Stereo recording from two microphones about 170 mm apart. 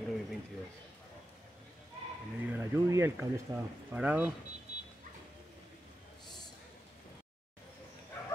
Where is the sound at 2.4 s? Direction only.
15° right (ahead or behind).